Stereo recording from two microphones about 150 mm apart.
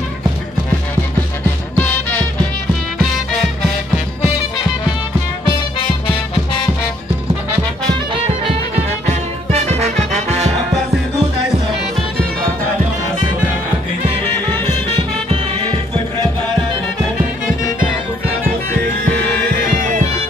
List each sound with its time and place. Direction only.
1.8 s music: 10° left (ahead or behind)
9.0 s music: 45° right (ahead or behind)